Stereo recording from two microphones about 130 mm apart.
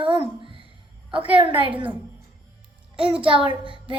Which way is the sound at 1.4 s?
40° right (ahead or behind).